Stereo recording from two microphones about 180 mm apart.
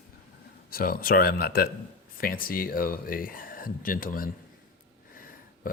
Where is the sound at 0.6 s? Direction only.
55° left (ahead or behind).